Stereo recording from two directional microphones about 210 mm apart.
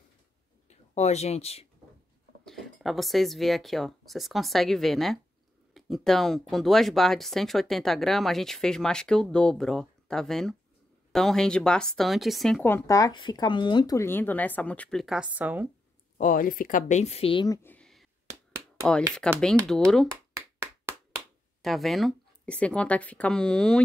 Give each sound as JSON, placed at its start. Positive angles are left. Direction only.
{"t": 0.7, "sound": "speech", "side_deg": 30}
{"t": 2.4, "sound": "speech", "side_deg": 0}
{"t": 16.2, "sound": "speech", "side_deg": 40}
{"t": 17.6, "sound": "a sound", "side_deg": 5}
{"t": 19.4, "sound": "speech", "side_deg": 0}
{"t": 21.6, "sound": "speech", "side_deg": 0}